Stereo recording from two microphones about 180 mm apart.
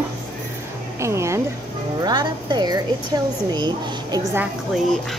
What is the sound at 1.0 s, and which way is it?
A woman's voice, 15° right (ahead or behind).